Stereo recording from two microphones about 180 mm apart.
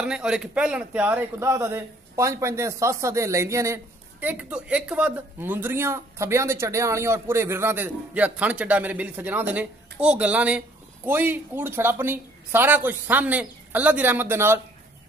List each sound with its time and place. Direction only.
0.0 s speech: 5° right (ahead or behind)